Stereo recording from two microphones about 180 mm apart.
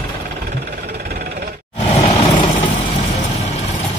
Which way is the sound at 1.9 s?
35° left (ahead or behind).